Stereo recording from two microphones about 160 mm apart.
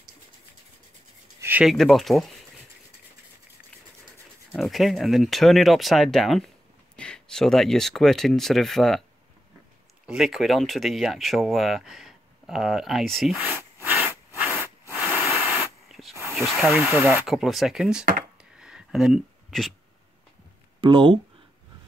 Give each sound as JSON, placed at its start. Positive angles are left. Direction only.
{"t": 1.4, "sound": "a sound", "side_deg": -10}
{"t": 1.7, "sound": "speech", "side_deg": 0}
{"t": 4.6, "sound": "speech", "side_deg": 0}
{"t": 10.0, "sound": "speech", "side_deg": 0}
{"t": 13.6, "sound": "a sound", "side_deg": -15}
{"t": 15.4, "sound": "spray", "side_deg": -10}
{"t": 16.3, "sound": "speech", "side_deg": 0}
{"t": 16.9, "sound": "speech", "side_deg": -15}
{"t": 17.3, "sound": "speech", "side_deg": 0}
{"t": 18.4, "sound": "a sound", "side_deg": -5}
{"t": 20.8, "sound": "speech", "side_deg": -30}